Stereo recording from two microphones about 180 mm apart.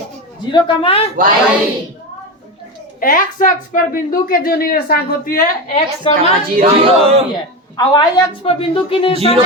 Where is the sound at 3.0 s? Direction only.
50° left (ahead or behind).